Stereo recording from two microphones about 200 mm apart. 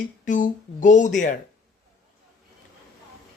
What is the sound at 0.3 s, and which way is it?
Speech, 40° left (ahead or behind).